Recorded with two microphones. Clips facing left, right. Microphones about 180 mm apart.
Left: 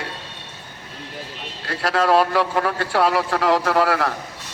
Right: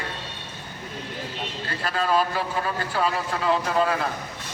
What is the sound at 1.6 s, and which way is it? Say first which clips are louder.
A man's voice: left 7 dB; 80° left.